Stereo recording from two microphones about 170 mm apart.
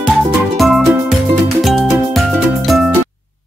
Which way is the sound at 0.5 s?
Centre (ahead or behind).